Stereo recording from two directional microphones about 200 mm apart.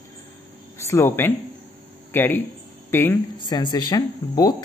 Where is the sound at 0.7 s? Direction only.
15° left (ahead or behind).